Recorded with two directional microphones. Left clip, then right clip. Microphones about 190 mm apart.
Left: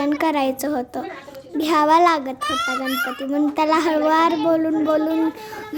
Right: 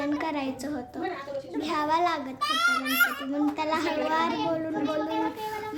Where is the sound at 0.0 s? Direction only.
45° left (ahead or behind).